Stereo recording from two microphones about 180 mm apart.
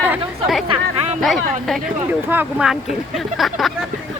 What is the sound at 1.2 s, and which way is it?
Speech, centre (ahead or behind).